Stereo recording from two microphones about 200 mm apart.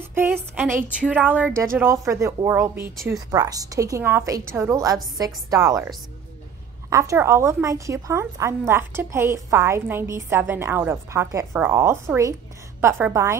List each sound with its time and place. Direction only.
0.0 s a woman's voice: 10° right (ahead or behind)
6.9 s a woman's voice: 15° right (ahead or behind)